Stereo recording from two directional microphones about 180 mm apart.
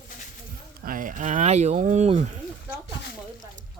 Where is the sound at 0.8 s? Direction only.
50° right (ahead or behind).